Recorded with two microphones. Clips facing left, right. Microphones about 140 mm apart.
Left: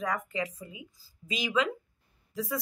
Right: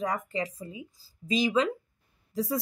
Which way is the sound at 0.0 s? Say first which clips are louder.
Right 2 dB; 30° right (ahead or behind).